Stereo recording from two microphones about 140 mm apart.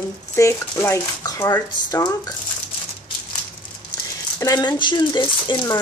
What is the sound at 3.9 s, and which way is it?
Rattle, 30° left (ahead or behind).